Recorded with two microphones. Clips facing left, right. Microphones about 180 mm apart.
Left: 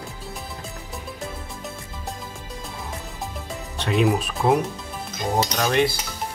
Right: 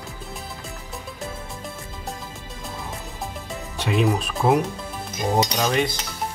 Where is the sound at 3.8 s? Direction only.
Centre (ahead or behind).